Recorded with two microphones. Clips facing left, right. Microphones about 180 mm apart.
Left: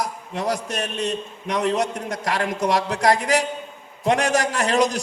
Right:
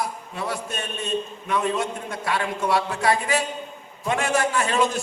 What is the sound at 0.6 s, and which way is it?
A man's voice, 85° left.